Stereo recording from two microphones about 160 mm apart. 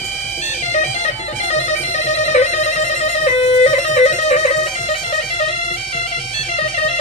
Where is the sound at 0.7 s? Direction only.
45° left (ahead or behind).